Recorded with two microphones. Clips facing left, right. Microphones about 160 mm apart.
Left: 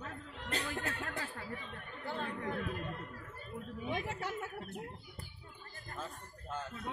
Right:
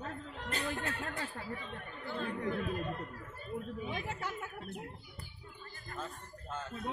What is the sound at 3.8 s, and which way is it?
Speech, 60° left (ahead or behind).